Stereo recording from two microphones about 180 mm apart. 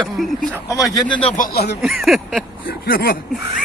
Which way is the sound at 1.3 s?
55° left (ahead or behind).